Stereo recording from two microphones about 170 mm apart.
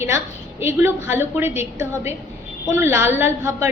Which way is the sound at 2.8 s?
10° right (ahead or behind).